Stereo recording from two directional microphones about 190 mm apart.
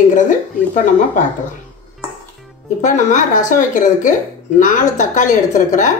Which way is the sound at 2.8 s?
40° left (ahead or behind).